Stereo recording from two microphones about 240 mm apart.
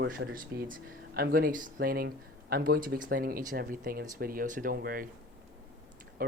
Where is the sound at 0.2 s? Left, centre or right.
Right.